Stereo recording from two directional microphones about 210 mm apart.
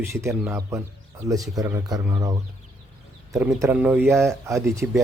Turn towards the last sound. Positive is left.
turn(degrees=-10)  # may be behind; listen again after turning